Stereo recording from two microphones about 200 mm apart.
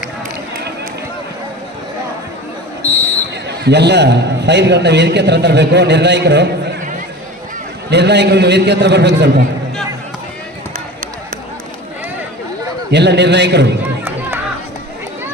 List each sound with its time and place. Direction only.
3.6 s a man's voice: 55° right (ahead or behind)
7.9 s a man's voice: 60° right (ahead or behind)
12.9 s a man's voice: 60° right (ahead or behind)